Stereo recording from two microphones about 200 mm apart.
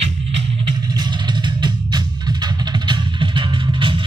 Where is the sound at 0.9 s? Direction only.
20° right (ahead or behind).